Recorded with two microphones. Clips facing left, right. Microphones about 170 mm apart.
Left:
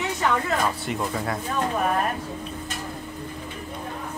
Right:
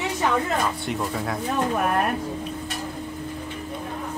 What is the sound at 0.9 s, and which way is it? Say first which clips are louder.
Speech: even; centre (ahead or behind).